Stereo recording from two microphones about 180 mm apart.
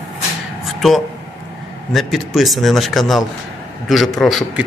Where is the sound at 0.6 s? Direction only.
Centre (ahead or behind).